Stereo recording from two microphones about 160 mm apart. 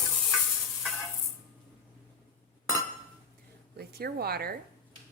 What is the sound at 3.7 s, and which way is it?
Speech, 75° right (ahead or behind).